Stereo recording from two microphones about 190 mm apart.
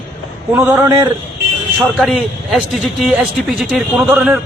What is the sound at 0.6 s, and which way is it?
Speech, 15° right (ahead or behind).